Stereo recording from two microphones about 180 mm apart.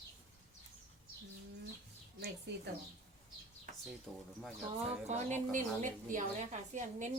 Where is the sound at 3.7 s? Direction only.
45° right (ahead or behind).